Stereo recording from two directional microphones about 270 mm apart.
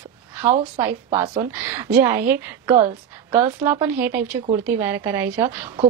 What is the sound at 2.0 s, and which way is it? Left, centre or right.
A woman's voice, centre.